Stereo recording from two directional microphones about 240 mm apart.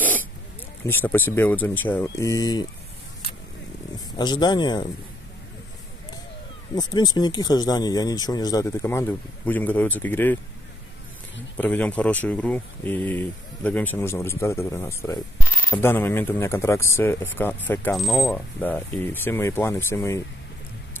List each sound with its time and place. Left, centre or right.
0.8 s speech: centre
3.9 s speech: centre
6.7 s speech: centre
11.5 s speech: centre